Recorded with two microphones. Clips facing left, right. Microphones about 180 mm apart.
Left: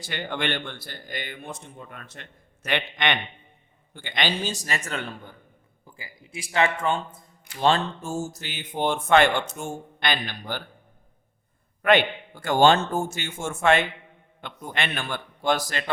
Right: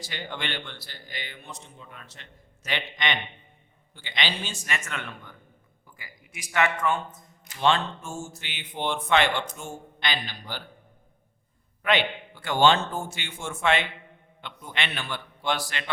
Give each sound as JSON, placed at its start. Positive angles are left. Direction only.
{"t": 0.0, "sound": "a man's voice", "side_deg": 55}
{"t": 11.8, "sound": "a man's voice", "side_deg": 50}